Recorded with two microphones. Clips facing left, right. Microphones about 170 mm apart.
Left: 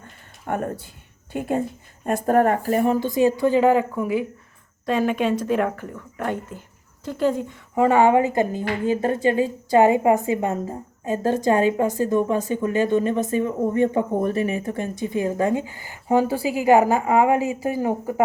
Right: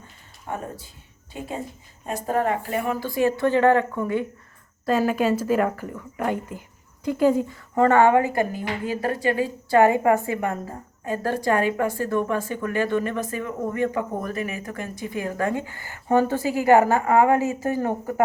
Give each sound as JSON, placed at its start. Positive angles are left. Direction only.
{"t": 0.0, "sound": "a sound", "side_deg": 60}
{"t": 1.3, "sound": "speech", "side_deg": 55}
{"t": 3.0, "sound": "a woman's voice", "side_deg": 20}
{"t": 7.8, "sound": "a woman's voice", "side_deg": 15}